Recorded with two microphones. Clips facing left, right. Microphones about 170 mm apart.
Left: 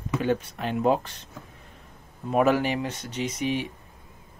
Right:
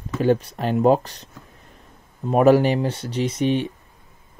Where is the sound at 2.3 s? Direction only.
35° right (ahead or behind).